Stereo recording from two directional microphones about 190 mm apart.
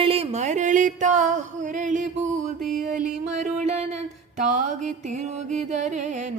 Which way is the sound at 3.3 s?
40° right (ahead or behind).